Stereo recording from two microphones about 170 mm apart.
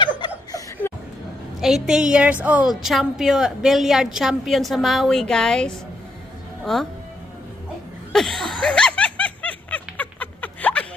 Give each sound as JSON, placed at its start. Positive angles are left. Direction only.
{"t": 0.0, "sound": "laughter", "side_deg": 25}
{"t": 1.6, "sound": "a woman's voice", "side_deg": -5}
{"t": 8.1, "sound": "a sound", "side_deg": 0}
{"t": 8.6, "sound": "snicker", "side_deg": 5}